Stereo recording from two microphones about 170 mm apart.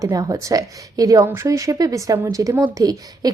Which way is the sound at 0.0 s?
20° right (ahead or behind).